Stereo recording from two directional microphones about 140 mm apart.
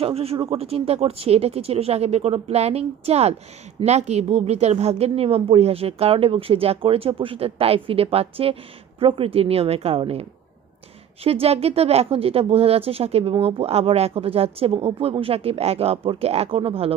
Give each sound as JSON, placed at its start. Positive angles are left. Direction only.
{"t": 0.0, "sound": "speech", "side_deg": -45}
{"t": 11.2, "sound": "speech", "side_deg": -45}